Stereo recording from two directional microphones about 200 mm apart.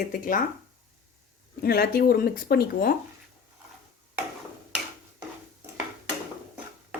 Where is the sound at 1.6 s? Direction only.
50° left (ahead or behind).